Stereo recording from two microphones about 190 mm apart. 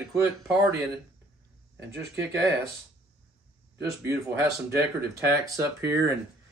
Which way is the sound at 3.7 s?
10° right (ahead or behind).